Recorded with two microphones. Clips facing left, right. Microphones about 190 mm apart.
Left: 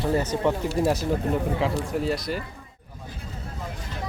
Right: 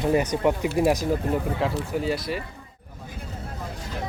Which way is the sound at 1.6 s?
Centre (ahead or behind).